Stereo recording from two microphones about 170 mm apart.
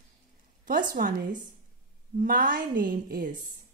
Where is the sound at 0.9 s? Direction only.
55° right (ahead or behind).